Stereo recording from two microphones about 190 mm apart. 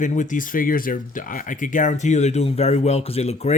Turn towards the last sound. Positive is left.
turn(degrees=35)  # may be behind; listen again after turning